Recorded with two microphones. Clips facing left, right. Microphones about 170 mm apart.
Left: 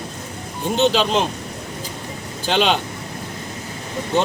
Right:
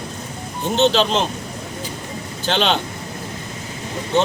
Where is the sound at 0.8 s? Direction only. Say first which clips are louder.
Right 1 dB; 10° left (ahead or behind).